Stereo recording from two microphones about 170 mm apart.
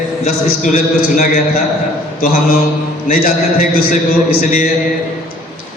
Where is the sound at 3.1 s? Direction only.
60° left (ahead or behind).